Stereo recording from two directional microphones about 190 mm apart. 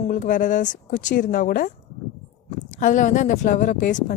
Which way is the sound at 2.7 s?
40° left (ahead or behind).